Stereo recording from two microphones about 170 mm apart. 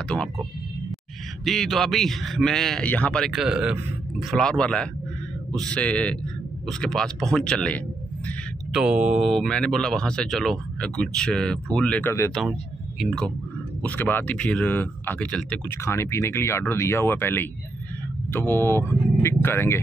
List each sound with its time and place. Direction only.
0.1 s speech: 20° right (ahead or behind)
1.4 s speech: centre (ahead or behind)
8.7 s speech: 5° right (ahead or behind); by 19.8 s 15° left (ahead or behind)